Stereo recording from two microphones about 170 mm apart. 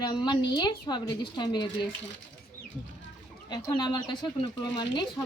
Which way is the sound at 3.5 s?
25° left (ahead or behind).